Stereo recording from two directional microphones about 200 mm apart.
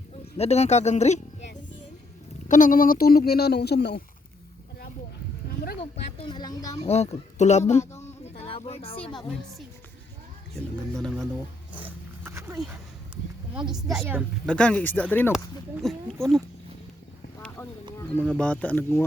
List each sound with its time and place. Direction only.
0.3 s speech: 30° left (ahead or behind)
2.5 s speech: 40° left (ahead or behind)
6.1 s a woman's voice: 25° left (ahead or behind)
6.8 s speech: 30° left (ahead or behind)
8.2 s a sound: 30° left (ahead or behind)
10.9 s speech: centre (ahead or behind)
11.7 s wild animals: 10° right (ahead or behind)
13.9 s speech: 5° right (ahead or behind)
17.6 s speech: 10° left (ahead or behind)